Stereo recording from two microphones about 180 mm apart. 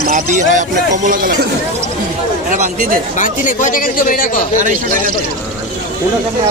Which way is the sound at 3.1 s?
45° left (ahead or behind).